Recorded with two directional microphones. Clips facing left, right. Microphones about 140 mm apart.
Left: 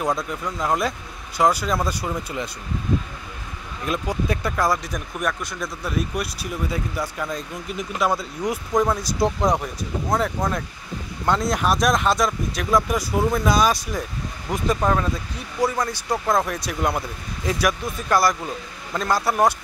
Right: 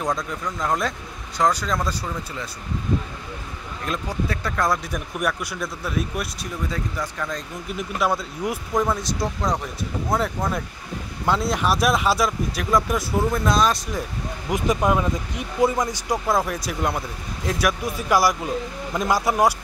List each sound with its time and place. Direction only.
0.0 s speech: 5° left (ahead or behind)
3.8 s speech: 5° left (ahead or behind)
5.2 s speech: 10° right (ahead or behind)
6.7 s speech: 10° left (ahead or behind)
7.7 s speech: centre (ahead or behind)
9.2 s speech: 20° left (ahead or behind)
10.0 s speech: centre (ahead or behind)
14.5 s speech: 10° right (ahead or behind)
16.3 s speech: 5° right (ahead or behind)